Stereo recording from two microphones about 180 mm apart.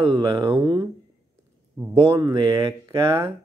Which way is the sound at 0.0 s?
25° right (ahead or behind).